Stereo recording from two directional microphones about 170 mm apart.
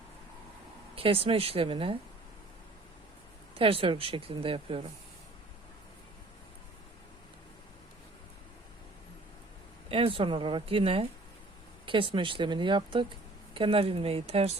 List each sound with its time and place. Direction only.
0.9 s speech: 35° right (ahead or behind)
3.6 s speech: 30° right (ahead or behind)
9.9 s speech: 30° right (ahead or behind)